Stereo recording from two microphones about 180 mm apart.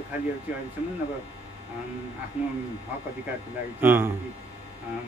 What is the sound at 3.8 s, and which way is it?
Speech, 10° right (ahead or behind).